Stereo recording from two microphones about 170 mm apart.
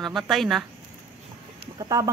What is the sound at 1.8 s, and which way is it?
Speech, 20° right (ahead or behind).